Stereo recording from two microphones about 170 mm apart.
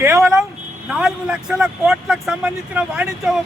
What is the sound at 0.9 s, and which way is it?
Speech, 5° right (ahead or behind).